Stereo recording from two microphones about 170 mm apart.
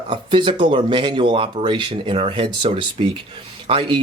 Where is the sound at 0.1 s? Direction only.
30° right (ahead or behind).